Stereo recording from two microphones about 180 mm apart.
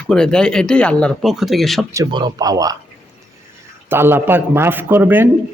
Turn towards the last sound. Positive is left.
turn(degrees=-10)  # may be behind; listen again after turning